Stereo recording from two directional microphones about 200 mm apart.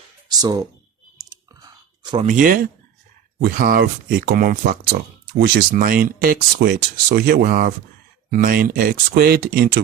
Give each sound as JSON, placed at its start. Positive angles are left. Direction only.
{"t": 0.3, "sound": "speech", "side_deg": -20}
{"t": 1.2, "sound": "clicking", "side_deg": -20}
{"t": 2.2, "sound": "speech", "side_deg": -40}